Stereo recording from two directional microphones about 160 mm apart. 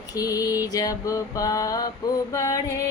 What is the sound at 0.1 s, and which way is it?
Female singing, 20° left (ahead or behind).